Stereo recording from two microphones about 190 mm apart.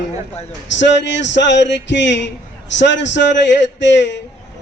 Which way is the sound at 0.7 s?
70° left (ahead or behind).